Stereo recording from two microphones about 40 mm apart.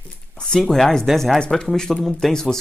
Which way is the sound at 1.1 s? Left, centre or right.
Centre.